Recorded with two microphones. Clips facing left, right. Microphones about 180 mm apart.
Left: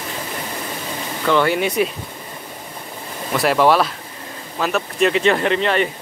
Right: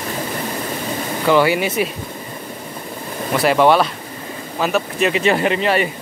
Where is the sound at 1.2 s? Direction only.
5° right (ahead or behind).